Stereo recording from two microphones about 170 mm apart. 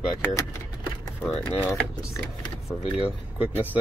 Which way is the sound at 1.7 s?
15° left (ahead or behind).